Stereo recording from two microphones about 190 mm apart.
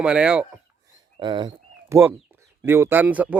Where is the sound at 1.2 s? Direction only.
25° right (ahead or behind).